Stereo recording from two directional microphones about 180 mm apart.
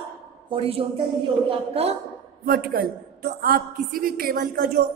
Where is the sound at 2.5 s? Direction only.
55° right (ahead or behind).